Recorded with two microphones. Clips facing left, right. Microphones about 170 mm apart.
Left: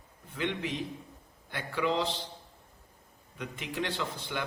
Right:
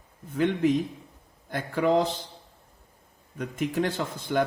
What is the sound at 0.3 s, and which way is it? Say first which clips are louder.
A man's voice: right 10 dB; 45° right (ahead or behind).